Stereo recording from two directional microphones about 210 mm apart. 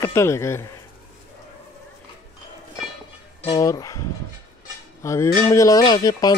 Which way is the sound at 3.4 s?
20° left (ahead or behind).